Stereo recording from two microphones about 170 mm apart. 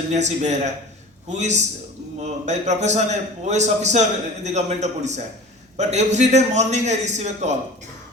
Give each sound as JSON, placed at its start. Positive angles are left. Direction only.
{"t": 0.1, "sound": "a man's voice", "side_deg": -45}